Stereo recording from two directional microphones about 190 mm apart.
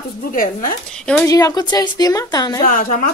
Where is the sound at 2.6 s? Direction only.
45° left (ahead or behind).